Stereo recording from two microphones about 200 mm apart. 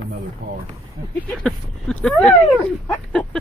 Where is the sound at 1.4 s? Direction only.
5° left (ahead or behind).